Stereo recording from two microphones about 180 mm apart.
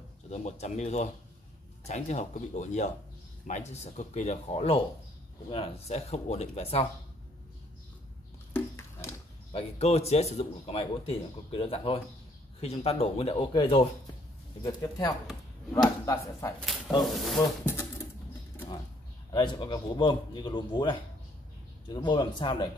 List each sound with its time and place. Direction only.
0.3 s speech: 40° left (ahead or behind)
8.5 s a sound: 15° left (ahead or behind)
9.5 s speech: 35° left (ahead or behind)
16.5 s speech: 5° left (ahead or behind)
19.3 s speech: 25° left (ahead or behind)